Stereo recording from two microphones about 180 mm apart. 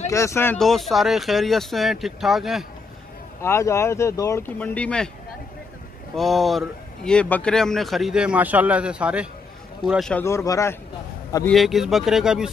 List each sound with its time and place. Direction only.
0.1 s speech: 15° left (ahead or behind)
0.6 s speech: centre (ahead or behind)
3.3 s speech: 15° left (ahead or behind)
6.1 s speech: centre (ahead or behind)
10.2 s speech: 15° left (ahead or behind)
11.4 s speech: centre (ahead or behind)